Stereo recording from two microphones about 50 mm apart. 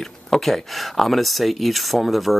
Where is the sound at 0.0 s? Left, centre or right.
Centre.